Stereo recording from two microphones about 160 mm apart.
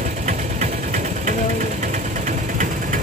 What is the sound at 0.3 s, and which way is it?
Vehicle, 50° right (ahead or behind).